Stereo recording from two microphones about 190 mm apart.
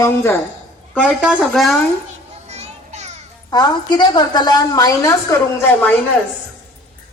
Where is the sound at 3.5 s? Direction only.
20° left (ahead or behind).